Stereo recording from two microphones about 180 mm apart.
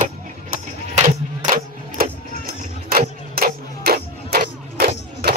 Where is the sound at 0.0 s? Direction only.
50° right (ahead or behind).